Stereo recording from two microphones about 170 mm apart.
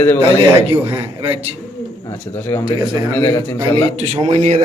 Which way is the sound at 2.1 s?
15° left (ahead or behind).